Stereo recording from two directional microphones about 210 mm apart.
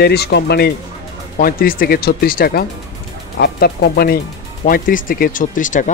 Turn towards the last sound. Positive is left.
turn(degrees=35)  # may be behind; listen again after turning